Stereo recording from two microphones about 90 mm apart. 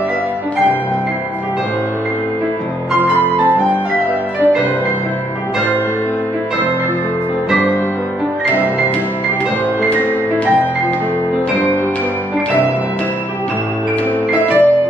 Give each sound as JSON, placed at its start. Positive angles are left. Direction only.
{"t": 14.4, "sound": "music", "side_deg": 20}